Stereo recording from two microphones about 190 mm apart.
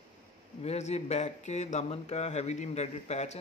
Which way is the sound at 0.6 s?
35° left (ahead or behind).